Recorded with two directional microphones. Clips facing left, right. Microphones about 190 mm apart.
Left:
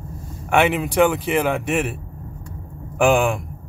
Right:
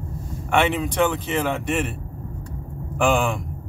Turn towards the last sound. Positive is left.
turn(degrees=5)  # may be behind; listen again after turning